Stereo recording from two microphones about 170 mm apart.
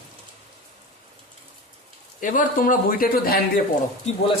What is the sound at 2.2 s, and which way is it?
A man's voice, 50° left (ahead or behind).